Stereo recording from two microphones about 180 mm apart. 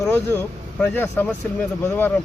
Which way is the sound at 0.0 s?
10° left (ahead or behind).